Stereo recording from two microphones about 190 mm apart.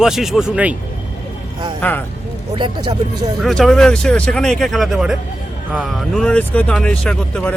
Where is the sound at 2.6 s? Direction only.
25° right (ahead or behind).